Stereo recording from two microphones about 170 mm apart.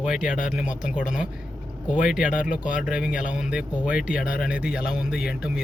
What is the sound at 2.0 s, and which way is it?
Speech, 5° right (ahead or behind).